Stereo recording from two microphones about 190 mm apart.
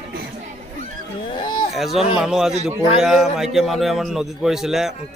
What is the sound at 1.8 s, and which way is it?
A man's voice, centre (ahead or behind).